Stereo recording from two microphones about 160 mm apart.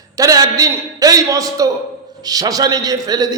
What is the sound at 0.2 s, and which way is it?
A man's voice, 20° right (ahead or behind).